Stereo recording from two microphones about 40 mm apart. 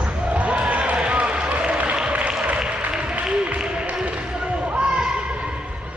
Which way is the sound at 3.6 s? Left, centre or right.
Centre.